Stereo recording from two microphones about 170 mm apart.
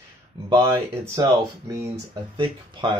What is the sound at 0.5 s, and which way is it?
Speech, 15° right (ahead or behind).